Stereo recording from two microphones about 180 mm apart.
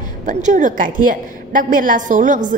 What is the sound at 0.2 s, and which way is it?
A woman's voice, 45° right (ahead or behind).